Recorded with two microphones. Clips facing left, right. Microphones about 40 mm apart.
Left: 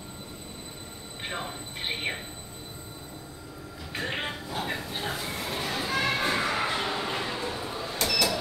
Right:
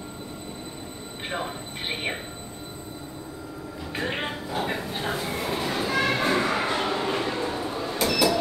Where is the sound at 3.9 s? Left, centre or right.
Centre.